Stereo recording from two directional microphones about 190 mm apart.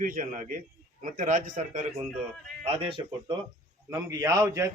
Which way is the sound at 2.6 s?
30° right (ahead or behind).